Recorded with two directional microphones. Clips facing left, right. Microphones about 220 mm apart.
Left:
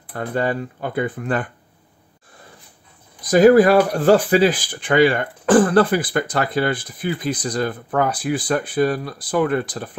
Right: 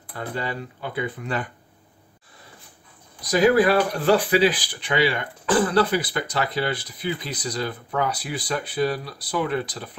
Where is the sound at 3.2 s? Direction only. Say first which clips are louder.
Left 6 dB; 50° left (ahead or behind).